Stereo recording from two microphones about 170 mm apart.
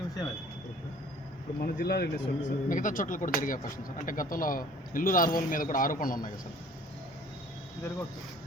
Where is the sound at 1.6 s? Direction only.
70° left (ahead or behind).